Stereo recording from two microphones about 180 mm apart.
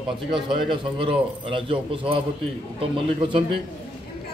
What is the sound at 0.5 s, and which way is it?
A man's voice, 30° right (ahead or behind).